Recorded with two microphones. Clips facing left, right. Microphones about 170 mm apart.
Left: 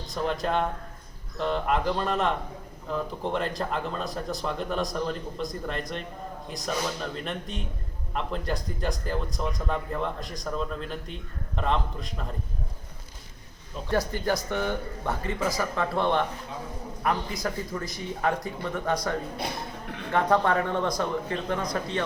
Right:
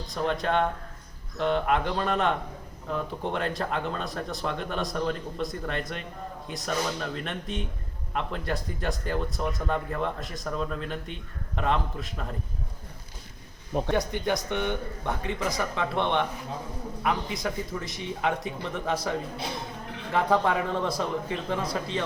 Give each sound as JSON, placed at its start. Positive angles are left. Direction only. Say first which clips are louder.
{"t": 0.1, "sound": "speech", "louder": "right 1 dB", "side_deg": 0}
{"t": 13.7, "sound": "speech", "louder": "right 10 dB", "side_deg": -55}
{"t": 14.3, "sound": "speech", "louder": "even", "side_deg": 0}